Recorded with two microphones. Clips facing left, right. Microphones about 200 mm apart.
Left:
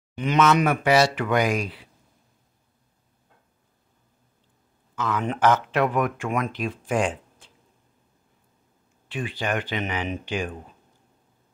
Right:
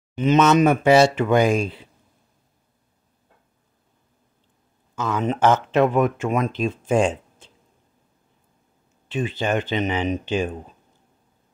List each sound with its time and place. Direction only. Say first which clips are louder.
0.1 s speech: right 4 dB; 20° right (ahead or behind)
4.9 s speech: right 3 dB; 25° right (ahead or behind)
9.1 s speech: right 5 dB; 25° right (ahead or behind)